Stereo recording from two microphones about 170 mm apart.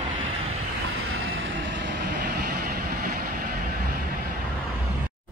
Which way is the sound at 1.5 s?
90° right.